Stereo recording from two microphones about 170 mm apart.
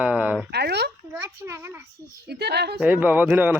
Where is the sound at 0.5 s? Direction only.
75° right (ahead or behind).